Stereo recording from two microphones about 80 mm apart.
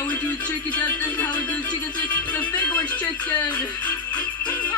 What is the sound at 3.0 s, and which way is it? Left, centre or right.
Speech, left.